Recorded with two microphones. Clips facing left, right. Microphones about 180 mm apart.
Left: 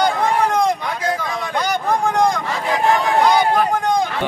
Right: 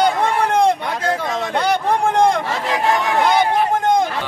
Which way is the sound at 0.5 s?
30° right (ahead or behind).